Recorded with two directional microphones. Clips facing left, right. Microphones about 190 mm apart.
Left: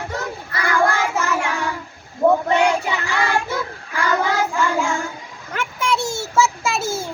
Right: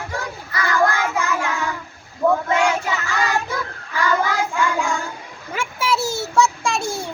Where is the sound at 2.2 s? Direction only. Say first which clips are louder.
Left 2 dB; 30° left (ahead or behind).